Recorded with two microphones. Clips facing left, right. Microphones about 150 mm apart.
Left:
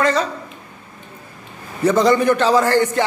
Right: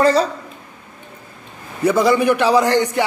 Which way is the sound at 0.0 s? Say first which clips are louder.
Right 4 dB; 35° right (ahead or behind).